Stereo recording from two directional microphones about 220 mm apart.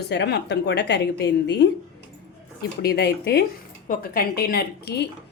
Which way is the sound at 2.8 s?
45° left (ahead or behind).